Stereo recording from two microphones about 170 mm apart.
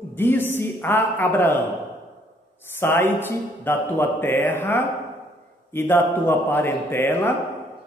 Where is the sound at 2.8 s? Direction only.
15° left (ahead or behind).